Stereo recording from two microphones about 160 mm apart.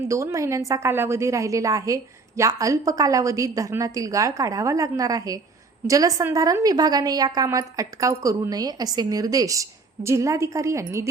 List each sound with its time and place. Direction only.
0.1 s a woman's voice: 20° right (ahead or behind)